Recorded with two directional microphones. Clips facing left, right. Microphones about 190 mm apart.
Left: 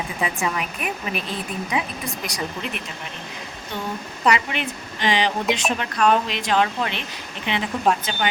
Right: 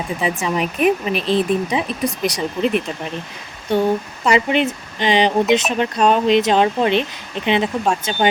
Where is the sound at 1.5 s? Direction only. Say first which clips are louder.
Right 11 dB; 90° right.